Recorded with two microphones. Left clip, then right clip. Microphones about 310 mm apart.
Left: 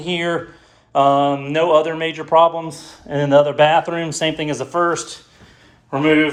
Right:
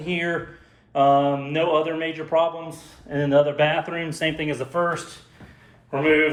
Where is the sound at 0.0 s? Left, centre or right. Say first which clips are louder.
Left 5 dB; centre.